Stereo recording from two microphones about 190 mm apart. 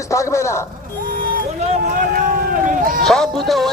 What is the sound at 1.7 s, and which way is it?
Speech, 45° right (ahead or behind).